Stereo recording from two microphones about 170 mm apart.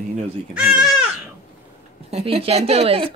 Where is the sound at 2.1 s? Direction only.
35° right (ahead or behind).